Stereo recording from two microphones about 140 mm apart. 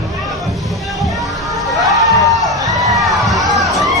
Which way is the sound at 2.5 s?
25° right (ahead or behind).